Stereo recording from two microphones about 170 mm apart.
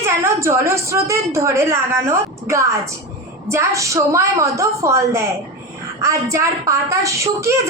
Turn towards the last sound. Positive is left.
turn(degrees=-15)  # may be behind; listen again after turning